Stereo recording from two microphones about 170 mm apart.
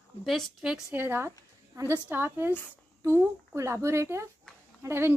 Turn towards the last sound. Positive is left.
turn(degrees=-15)  # may be behind; listen again after turning